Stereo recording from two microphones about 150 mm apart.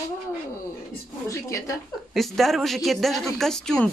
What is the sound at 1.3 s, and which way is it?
Speech, 20° left (ahead or behind).